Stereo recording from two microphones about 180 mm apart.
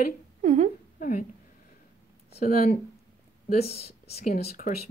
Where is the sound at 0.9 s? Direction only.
50° left (ahead or behind).